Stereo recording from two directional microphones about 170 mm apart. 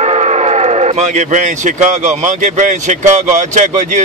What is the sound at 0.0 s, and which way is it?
Speech, 40° right (ahead or behind).